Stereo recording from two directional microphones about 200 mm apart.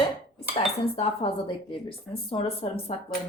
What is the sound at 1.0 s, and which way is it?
A woman's voice, 30° left (ahead or behind).